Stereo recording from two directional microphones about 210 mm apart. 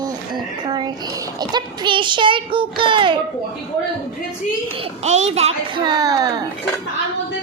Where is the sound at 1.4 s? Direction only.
20° right (ahead or behind).